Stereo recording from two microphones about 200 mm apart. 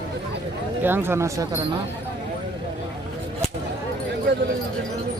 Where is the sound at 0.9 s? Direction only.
10° right (ahead or behind).